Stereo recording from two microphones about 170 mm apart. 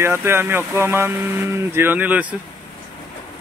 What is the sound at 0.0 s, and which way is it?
Speech, 15° right (ahead or behind).